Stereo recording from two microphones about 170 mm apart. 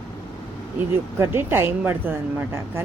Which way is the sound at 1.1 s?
15° right (ahead or behind).